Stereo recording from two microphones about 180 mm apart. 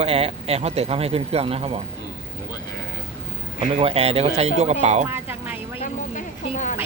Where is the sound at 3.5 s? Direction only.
35° right (ahead or behind).